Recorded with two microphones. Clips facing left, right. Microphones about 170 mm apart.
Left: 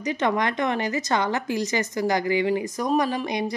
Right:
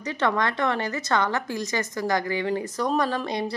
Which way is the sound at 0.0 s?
15° left (ahead or behind).